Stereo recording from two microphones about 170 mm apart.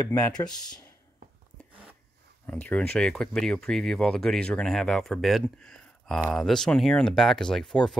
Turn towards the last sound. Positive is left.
turn(degrees=5)  # may be behind; listen again after turning